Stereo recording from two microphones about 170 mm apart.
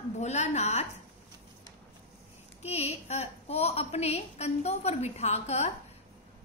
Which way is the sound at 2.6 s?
40° left (ahead or behind).